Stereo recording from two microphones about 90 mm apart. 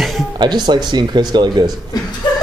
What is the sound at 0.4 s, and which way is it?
Speech, 55° right (ahead or behind).